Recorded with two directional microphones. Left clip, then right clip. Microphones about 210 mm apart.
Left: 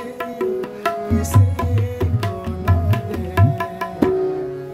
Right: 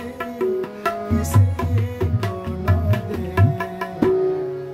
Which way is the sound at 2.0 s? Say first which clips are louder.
Right 1 dB; 50° left (ahead or behind).